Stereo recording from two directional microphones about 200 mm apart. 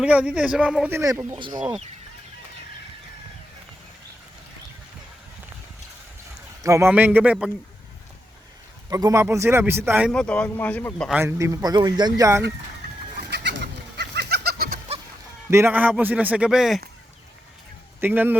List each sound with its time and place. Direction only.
0.0 s speech: 5° right (ahead or behind)
6.6 s a man's voice: 15° right (ahead or behind)
8.9 s a man's voice: 20° right (ahead or behind)
10.1 s speech: 5° left (ahead or behind)
11.1 s a man's voice: 10° right (ahead or behind)
13.3 s chicken: 60° right (ahead or behind)
15.4 s a man's voice: 10° right (ahead or behind)
18.0 s a man's voice: 10° right (ahead or behind)